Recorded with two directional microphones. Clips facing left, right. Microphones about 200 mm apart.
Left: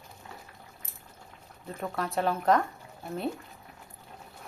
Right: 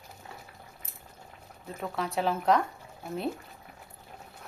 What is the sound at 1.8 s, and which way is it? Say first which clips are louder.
Speech: even; centre (ahead or behind).